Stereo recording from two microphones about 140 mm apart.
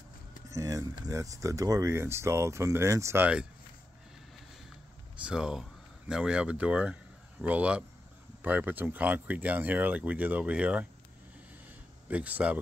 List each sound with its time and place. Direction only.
0.5 s speech: 25° right (ahead or behind)
5.2 s speech: 5° right (ahead or behind)
12.1 s speech: 10° right (ahead or behind)